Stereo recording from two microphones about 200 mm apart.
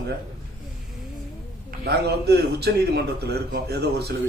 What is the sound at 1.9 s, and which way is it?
A man's voice, 55° right (ahead or behind).